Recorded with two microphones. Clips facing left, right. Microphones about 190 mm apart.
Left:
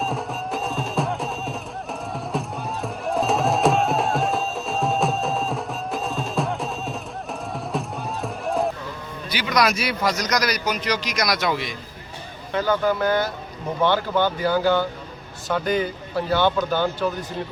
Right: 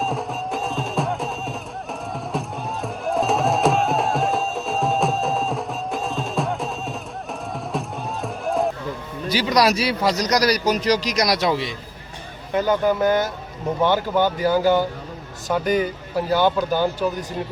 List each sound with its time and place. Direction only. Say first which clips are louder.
0.0 s music: right 2 dB; centre (ahead or behind)
9.3 s a man's voice: right 3 dB; 35° right (ahead or behind)
12.5 s speech: right 2 dB; 15° right (ahead or behind)